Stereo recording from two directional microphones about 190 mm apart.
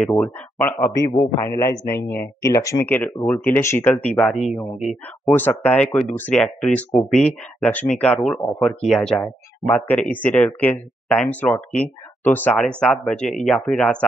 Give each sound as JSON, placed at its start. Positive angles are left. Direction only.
{"t": 0.0, "sound": "speech", "side_deg": 5}
{"t": 0.7, "sound": "speech", "side_deg": 15}